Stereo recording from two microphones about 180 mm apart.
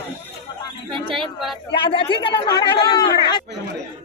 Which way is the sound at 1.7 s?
30° left (ahead or behind).